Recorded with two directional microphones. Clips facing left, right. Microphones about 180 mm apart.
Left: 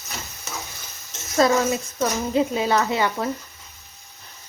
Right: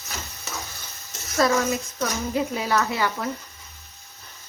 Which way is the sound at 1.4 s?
25° left (ahead or behind).